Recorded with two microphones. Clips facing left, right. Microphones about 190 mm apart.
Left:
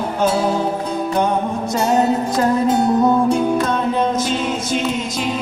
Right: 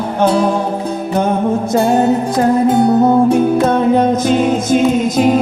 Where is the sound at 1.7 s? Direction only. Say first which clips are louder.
Right 4 dB; 55° right (ahead or behind).